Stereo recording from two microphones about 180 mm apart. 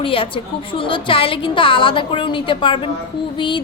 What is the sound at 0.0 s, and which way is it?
A woman's voice, 30° left (ahead or behind).